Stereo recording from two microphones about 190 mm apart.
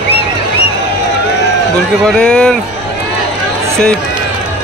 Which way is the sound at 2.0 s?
5° left (ahead or behind).